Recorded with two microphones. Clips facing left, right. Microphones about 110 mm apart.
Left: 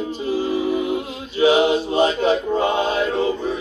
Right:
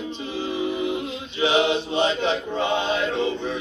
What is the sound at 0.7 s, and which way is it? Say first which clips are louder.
Music: left 4 dB; 45° left (ahead or behind).